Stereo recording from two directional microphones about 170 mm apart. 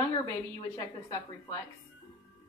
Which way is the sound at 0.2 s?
20° left (ahead or behind).